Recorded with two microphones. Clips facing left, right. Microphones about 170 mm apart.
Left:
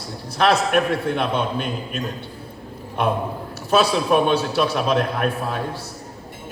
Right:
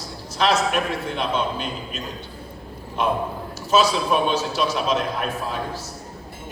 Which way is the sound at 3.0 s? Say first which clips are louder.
Left 1 dB; 60° left (ahead or behind).